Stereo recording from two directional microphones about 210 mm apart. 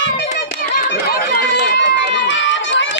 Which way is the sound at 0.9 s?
50° left (ahead or behind).